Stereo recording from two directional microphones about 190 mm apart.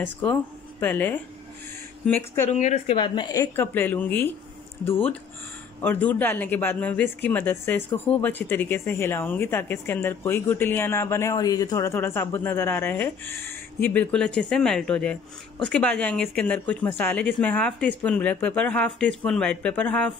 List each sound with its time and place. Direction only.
0.0 s speech: 10° left (ahead or behind)
2.4 s speech: 40° left (ahead or behind)
3.0 s speech: 20° left (ahead or behind)
5.8 s speech: 10° left (ahead or behind)